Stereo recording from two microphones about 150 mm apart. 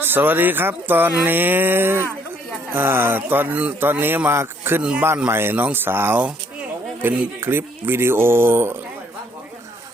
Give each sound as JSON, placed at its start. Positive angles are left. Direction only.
{"t": 0.0, "sound": "speech", "side_deg": -15}